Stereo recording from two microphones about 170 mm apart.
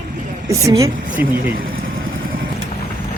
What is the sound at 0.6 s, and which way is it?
Speech, 20° right (ahead or behind).